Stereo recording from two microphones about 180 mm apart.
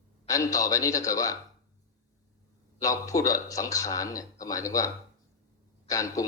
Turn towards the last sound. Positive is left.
turn(degrees=20)  # may be behind; listen again after turning